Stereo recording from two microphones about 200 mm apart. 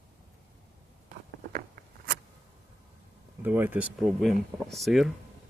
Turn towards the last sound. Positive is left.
turn(degrees=0)  # may be behind; listen again after turning